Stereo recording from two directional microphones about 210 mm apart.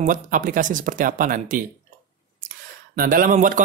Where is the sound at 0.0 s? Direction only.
40° right (ahead or behind).